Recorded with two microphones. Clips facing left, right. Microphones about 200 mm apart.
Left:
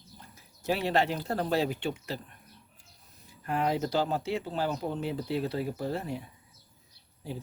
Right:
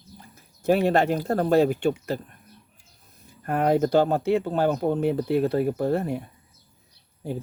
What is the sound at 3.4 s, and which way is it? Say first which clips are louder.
Speech: right 8 dB; 55° right (ahead or behind).